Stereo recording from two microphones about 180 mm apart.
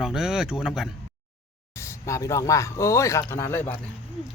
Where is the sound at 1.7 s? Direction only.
15° left (ahead or behind).